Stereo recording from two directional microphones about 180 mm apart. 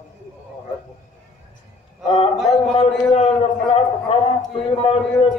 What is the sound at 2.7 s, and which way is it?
A man's voice, 35° left (ahead or behind).